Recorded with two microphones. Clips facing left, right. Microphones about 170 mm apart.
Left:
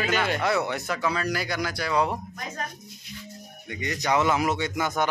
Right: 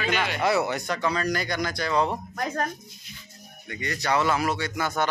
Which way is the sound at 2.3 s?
55° right (ahead or behind).